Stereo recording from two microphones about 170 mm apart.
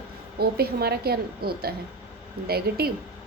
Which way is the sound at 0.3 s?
65° right (ahead or behind).